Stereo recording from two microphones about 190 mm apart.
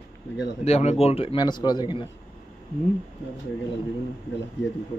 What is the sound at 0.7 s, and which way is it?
Speech, 35° left (ahead or behind).